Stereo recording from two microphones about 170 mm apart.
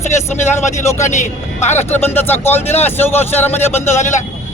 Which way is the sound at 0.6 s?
45° left (ahead or behind).